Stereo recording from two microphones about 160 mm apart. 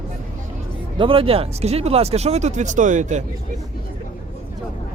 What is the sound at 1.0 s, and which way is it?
Speech, 35° right (ahead or behind).